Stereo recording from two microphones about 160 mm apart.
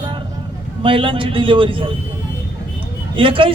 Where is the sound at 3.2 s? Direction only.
35° right (ahead or behind).